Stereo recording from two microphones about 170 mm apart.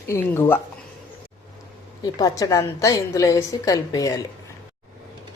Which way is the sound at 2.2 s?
20° left (ahead or behind).